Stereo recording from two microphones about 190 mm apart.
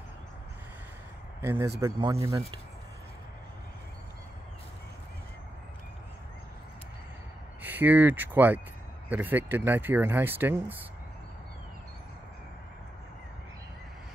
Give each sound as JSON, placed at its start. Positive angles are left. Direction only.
{"t": 1.4, "sound": "speech", "side_deg": -10}
{"t": 7.6, "sound": "speech", "side_deg": -10}